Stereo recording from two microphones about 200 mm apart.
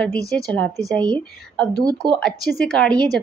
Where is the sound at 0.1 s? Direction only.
50° left (ahead or behind).